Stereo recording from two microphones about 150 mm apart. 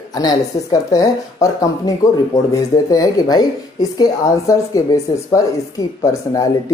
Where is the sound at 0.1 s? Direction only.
25° left (ahead or behind).